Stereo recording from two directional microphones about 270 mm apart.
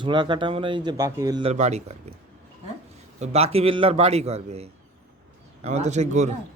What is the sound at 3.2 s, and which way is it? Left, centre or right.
Speech, right.